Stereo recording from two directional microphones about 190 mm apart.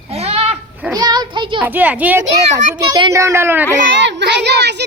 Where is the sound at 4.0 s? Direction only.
65° right (ahead or behind).